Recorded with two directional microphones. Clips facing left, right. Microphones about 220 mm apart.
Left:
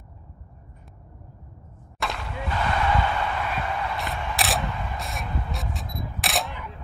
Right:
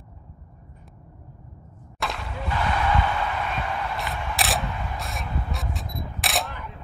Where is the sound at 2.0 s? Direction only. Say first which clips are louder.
Even; centre (ahead or behind).